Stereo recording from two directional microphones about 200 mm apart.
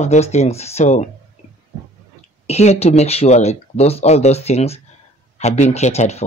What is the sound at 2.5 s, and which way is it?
Speech, 30° left (ahead or behind).